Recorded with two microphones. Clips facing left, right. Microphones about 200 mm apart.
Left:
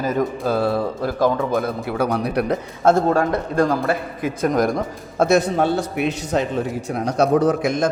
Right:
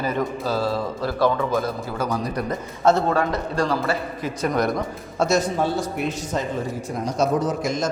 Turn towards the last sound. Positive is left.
turn(degrees=60)  # may be behind; listen again after turning